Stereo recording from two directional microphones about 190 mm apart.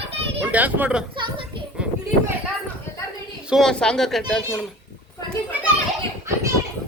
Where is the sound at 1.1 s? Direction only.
25° right (ahead or behind).